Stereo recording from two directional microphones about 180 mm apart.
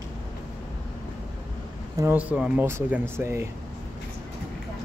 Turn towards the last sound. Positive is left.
turn(degrees=-15)  # may be behind; listen again after turning